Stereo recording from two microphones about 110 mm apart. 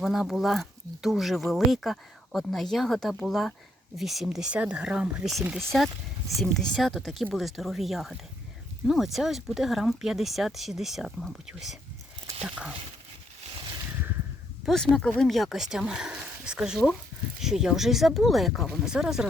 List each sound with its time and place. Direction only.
0.0 s speech: 5° right (ahead or behind)
14.6 s speech: 5° left (ahead or behind)